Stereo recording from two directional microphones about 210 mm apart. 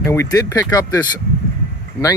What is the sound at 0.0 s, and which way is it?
Speech, 15° left (ahead or behind).